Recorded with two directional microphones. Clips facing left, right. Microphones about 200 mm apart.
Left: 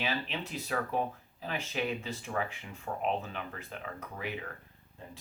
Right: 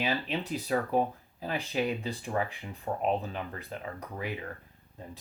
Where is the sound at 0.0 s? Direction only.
35° right (ahead or behind).